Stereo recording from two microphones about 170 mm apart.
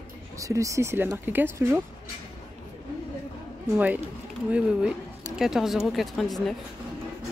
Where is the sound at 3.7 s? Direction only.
10° right (ahead or behind).